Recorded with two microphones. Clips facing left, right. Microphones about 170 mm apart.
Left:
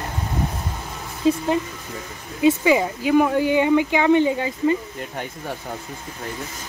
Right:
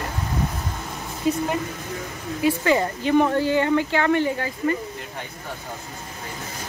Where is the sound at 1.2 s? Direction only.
25° left (ahead or behind).